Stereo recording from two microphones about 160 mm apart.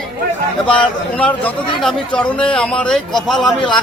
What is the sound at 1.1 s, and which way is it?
A man's voice, 10° left (ahead or behind).